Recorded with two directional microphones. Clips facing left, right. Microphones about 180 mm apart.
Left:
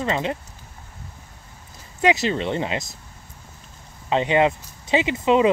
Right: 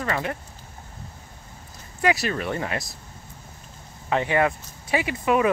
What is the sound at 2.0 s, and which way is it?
Speech, 20° left (ahead or behind).